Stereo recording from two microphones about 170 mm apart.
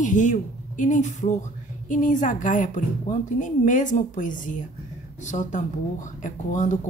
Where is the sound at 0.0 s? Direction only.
50° left (ahead or behind).